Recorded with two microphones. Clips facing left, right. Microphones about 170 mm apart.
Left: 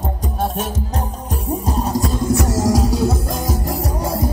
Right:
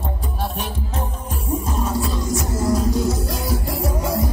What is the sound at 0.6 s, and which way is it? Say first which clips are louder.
Music: left 4 dB; 40° left (ahead or behind).